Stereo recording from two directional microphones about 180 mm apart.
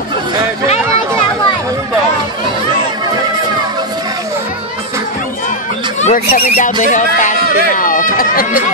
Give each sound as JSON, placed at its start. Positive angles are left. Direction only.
{"t": 5.9, "sound": "speech", "side_deg": 40}